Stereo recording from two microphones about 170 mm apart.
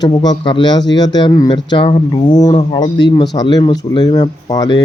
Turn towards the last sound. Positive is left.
turn(degrees=25)  # may be behind; listen again after turning